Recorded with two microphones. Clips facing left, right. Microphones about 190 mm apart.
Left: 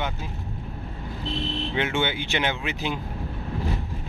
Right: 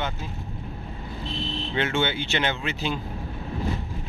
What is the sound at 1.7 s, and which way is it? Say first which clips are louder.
Speech: right 1 dB; 15° left (ahead or behind).